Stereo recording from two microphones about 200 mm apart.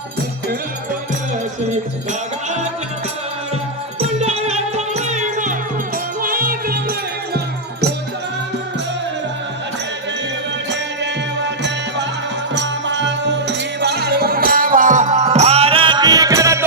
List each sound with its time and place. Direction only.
4.2 s music: 30° right (ahead or behind); by 6.9 s 50° right (ahead or behind)
10.7 s music: 60° right (ahead or behind); by 16.6 s 15° right (ahead or behind)